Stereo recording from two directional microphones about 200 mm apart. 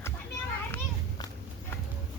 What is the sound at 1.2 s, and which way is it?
Walk, 20° left (ahead or behind).